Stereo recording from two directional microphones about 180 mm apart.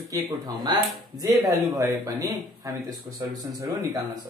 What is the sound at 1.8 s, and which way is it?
Speech, 15° right (ahead or behind).